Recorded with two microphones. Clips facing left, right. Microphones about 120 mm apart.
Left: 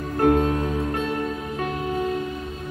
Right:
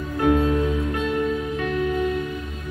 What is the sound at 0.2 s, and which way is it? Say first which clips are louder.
Music: even; 45° left (ahead or behind).